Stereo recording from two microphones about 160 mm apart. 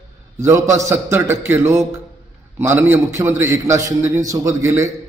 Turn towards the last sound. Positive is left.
turn(degrees=-15)  # may be behind; listen again after turning